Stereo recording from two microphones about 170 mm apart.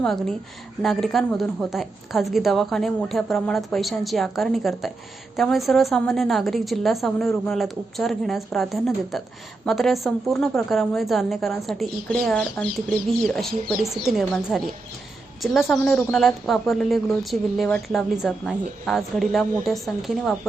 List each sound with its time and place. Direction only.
0.0 s a woman's voice: centre (ahead or behind)